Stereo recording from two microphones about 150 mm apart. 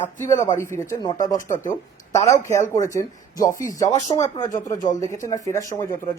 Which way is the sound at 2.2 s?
20° left (ahead or behind).